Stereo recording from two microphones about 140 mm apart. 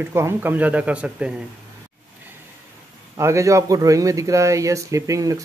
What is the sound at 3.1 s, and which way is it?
Speech, 20° right (ahead or behind).